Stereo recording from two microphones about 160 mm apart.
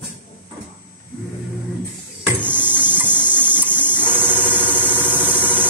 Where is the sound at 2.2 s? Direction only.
10° right (ahead or behind).